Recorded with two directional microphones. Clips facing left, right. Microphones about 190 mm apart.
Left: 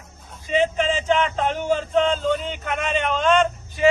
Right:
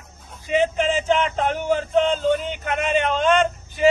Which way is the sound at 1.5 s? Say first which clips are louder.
Right 1 dB; 10° right (ahead or behind).